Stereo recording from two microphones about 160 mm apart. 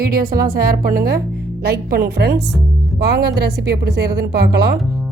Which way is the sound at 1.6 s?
80° right.